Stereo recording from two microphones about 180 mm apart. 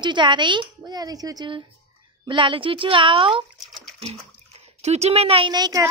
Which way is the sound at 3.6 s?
Centre (ahead or behind).